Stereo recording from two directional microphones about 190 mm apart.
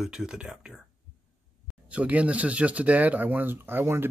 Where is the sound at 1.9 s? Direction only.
5° right (ahead or behind).